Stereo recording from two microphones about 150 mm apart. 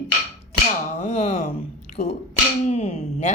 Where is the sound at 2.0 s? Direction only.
45° left (ahead or behind).